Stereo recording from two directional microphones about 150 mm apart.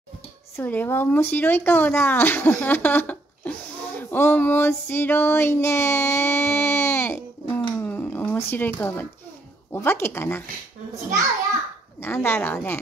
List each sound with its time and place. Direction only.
0.6 s speech: 15° left (ahead or behind)
7.8 s a sound: 15° left (ahead or behind)
9.7 s speech: 15° left (ahead or behind)
12.0 s speech: 15° left (ahead or behind)